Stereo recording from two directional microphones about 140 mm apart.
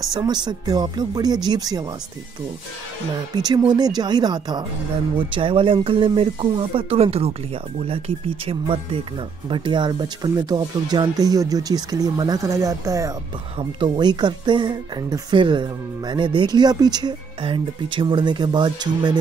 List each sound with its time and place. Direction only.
0.1 s speech: 30° right (ahead or behind)
3.3 s speech: 30° right (ahead or behind); by 7.3 s 45° right (ahead or behind)
8.5 s speech: 40° right (ahead or behind)